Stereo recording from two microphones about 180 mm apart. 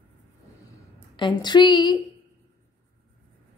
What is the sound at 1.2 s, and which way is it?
Speech, 25° left (ahead or behind).